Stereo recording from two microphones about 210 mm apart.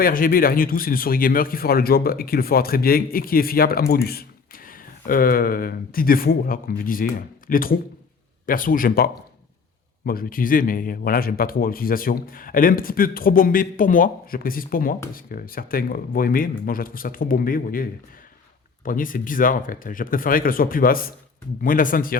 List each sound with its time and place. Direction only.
0.0 s a man's voice: 40° left (ahead or behind)
10.1 s a man's voice: 45° left (ahead or behind)
18.9 s speech: 40° left (ahead or behind)